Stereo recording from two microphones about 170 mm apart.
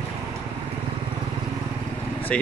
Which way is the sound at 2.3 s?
5° left (ahead or behind).